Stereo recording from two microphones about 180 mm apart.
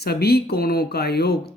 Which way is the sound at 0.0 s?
60° left (ahead or behind).